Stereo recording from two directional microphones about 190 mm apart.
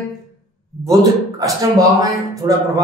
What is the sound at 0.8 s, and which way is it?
A man's voice, 20° right (ahead or behind).